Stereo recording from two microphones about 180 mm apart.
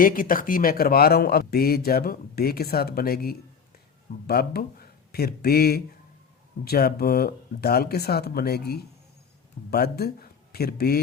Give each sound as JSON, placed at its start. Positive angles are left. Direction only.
{"t": 0.0, "sound": "a man's voice", "side_deg": 50}